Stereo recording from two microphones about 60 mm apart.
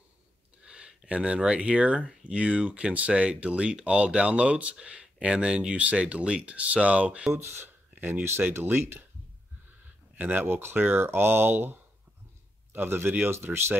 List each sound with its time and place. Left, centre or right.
0.7 s speech: centre
7.4 s speech: right
10.1 s speech: right
10.4 s speech: right